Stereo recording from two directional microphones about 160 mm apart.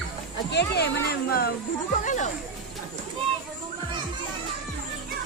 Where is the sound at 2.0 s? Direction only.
50° left (ahead or behind).